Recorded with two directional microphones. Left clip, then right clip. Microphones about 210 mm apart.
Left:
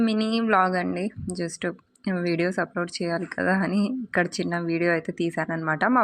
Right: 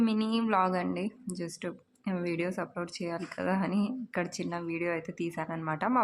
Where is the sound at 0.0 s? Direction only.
15° left (ahead or behind).